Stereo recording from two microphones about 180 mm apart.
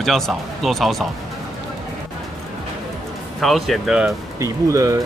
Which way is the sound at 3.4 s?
Centre (ahead or behind).